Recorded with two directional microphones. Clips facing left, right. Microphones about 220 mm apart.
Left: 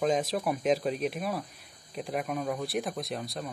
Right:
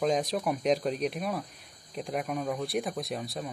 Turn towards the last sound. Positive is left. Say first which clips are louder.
# right 1 dB
turn(degrees=0)  # may be behind; listen again after turning